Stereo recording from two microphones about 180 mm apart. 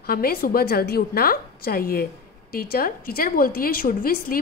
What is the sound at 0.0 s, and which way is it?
A woman's voice, 55° left (ahead or behind).